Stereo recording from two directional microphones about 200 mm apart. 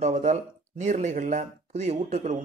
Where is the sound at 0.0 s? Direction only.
35° right (ahead or behind).